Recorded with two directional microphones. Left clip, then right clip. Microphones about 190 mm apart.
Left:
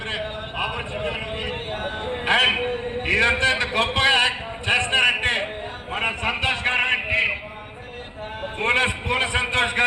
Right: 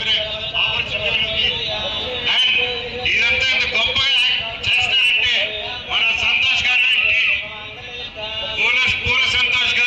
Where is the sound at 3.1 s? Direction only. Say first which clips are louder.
Right 2 dB; 50° left (ahead or behind).